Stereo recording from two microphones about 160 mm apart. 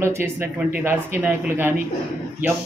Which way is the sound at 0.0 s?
15° right (ahead or behind).